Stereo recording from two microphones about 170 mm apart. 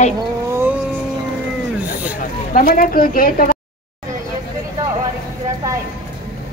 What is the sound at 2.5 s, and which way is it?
A woman's voice, 60° left (ahead or behind).